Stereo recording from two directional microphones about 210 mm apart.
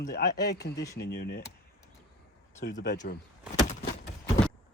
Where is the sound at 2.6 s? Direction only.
50° left (ahead or behind).